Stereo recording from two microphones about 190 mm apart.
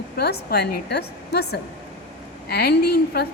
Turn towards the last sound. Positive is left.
turn(degrees=55)  # may be behind; listen again after turning